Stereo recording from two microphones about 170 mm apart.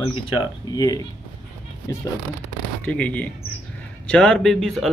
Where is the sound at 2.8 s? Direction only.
10° left (ahead or behind).